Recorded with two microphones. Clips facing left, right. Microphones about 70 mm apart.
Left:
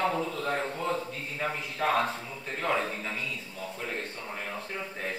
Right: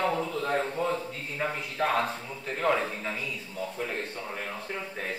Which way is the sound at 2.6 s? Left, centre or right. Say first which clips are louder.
Right 3 dB; centre.